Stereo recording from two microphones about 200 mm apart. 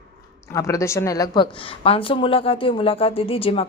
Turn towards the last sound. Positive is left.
turn(degrees=30)  # may be behind; listen again after turning